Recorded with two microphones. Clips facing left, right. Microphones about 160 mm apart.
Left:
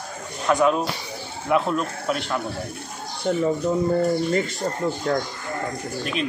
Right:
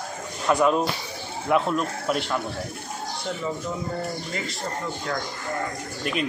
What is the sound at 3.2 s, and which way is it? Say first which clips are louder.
Speech: left 10 dB; 45° left (ahead or behind).